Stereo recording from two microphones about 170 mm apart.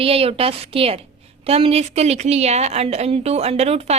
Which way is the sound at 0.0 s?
35° right (ahead or behind).